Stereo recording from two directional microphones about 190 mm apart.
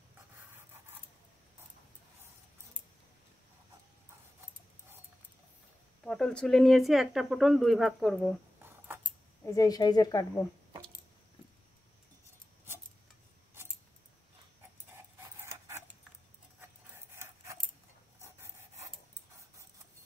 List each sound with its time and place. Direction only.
6.0 s speech: 5° left (ahead or behind)
9.4 s a woman's voice: 15° left (ahead or behind)
15.4 s a sound: 15° right (ahead or behind)
16.9 s rub: 15° right (ahead or behind)
18.2 s filing: 15° right (ahead or behind)